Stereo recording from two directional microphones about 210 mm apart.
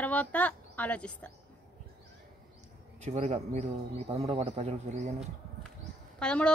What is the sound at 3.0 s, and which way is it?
Speech, 30° right (ahead or behind).